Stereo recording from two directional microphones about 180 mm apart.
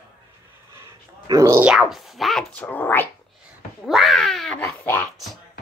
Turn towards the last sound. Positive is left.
turn(degrees=10)  # may be behind; listen again after turning